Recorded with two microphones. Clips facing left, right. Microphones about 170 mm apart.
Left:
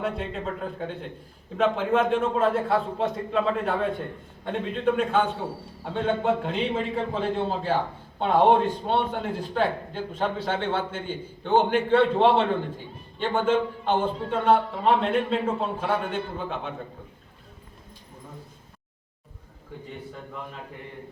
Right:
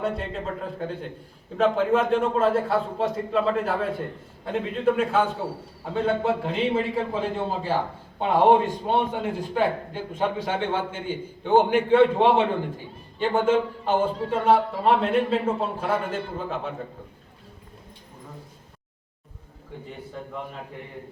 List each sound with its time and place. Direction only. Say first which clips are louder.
0.0 s a man's voice: right 1 dB; centre (ahead or behind)